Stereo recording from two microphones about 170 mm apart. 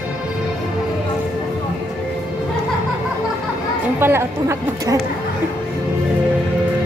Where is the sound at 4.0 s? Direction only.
15° right (ahead or behind).